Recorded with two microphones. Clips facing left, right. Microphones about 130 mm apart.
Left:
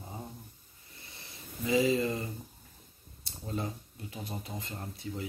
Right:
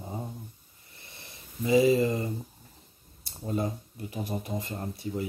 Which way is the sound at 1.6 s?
30° right (ahead or behind).